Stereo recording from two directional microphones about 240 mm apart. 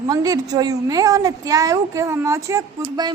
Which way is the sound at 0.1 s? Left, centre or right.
Centre.